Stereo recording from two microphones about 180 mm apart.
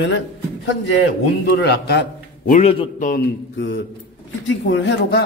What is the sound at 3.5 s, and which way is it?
A man's voice, 90° left.